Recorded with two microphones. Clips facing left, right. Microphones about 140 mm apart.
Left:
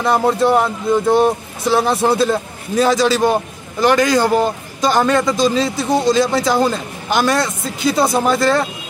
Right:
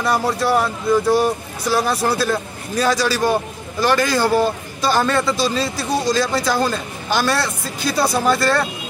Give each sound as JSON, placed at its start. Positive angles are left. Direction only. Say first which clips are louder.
{"t": 0.0, "sound": "a man's voice", "louder": "left 4 dB", "side_deg": 20}